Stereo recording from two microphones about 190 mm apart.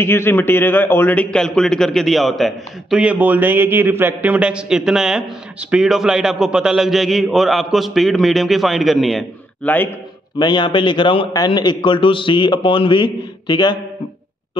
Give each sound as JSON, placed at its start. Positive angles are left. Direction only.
{"t": 0.0, "sound": "a man's voice", "side_deg": 10}
{"t": 10.4, "sound": "a man's voice", "side_deg": 25}